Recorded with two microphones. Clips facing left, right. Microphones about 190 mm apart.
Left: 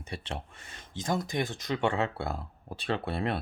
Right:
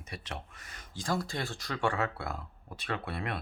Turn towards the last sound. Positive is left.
turn(degrees=30)  # may be behind; listen again after turning